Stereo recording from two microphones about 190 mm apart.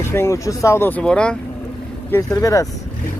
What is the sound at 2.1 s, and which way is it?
Speech, 15° left (ahead or behind).